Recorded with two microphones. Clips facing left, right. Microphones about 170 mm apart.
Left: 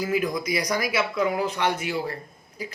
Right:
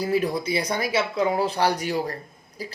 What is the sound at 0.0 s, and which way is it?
Speech, 30° right (ahead or behind).